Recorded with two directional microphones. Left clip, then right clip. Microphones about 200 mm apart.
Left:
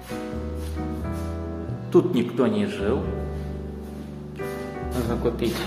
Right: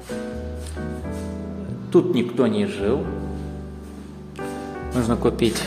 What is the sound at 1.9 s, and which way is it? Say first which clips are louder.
Speech: right 2 dB; 15° right (ahead or behind).